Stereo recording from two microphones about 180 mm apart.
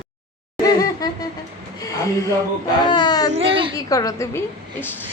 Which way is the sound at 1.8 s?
20° left (ahead or behind).